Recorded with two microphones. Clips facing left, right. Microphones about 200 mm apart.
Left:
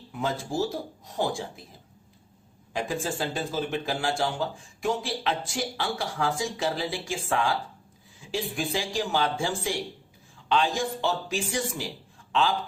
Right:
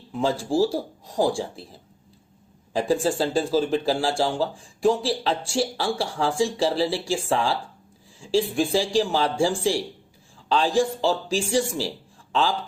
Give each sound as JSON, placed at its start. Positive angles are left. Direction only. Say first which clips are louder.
{"t": 0.1, "sound": "speech", "louder": "right 6 dB", "side_deg": -30}
{"t": 2.7, "sound": "a man's voice", "louder": "right 8 dB", "side_deg": -35}